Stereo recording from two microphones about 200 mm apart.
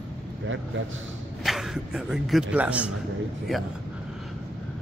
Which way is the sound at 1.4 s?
Centre (ahead or behind).